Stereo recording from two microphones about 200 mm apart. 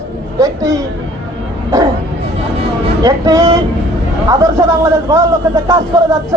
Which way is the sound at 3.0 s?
15° right (ahead or behind).